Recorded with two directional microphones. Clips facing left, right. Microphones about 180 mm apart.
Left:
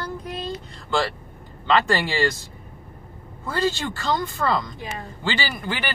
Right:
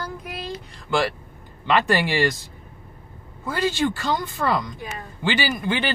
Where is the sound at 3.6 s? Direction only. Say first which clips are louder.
Right 2 dB; 15° right (ahead or behind).